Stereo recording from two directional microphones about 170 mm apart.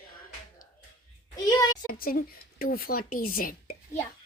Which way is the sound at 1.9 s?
60° left (ahead or behind).